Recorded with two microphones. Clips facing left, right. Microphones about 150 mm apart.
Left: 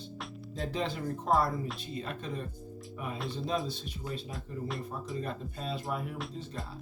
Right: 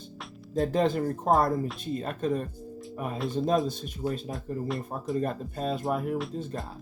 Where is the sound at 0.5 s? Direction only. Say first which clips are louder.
Right 10 dB; 45° right (ahead or behind).